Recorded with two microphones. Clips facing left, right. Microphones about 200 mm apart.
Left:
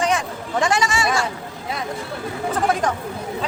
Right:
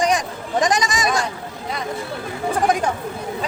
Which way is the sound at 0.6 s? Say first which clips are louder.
Even; 15° right (ahead or behind).